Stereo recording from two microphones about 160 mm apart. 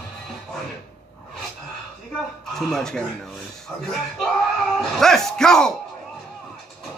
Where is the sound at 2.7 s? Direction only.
5° left (ahead or behind).